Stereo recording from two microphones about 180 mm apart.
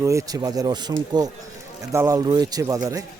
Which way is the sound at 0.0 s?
15° right (ahead or behind).